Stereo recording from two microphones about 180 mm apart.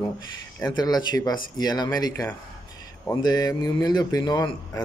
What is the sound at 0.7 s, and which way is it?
A man's voice, 20° left (ahead or behind).